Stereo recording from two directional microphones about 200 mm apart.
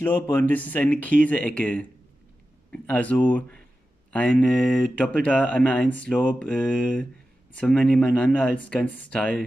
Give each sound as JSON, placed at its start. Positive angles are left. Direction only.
{"t": 0.0, "sound": "speech", "side_deg": 10}